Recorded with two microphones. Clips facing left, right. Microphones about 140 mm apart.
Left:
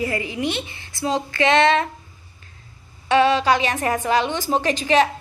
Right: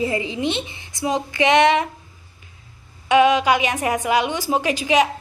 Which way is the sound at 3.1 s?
15° right (ahead or behind).